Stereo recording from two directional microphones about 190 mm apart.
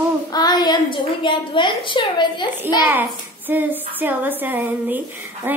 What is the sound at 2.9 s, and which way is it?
A child's voice, 10° right (ahead or behind).